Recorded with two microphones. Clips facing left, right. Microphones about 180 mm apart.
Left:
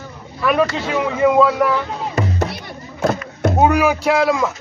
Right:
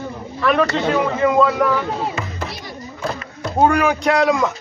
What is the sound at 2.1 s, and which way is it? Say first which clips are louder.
Music: left 6 dB; 40° left (ahead or behind).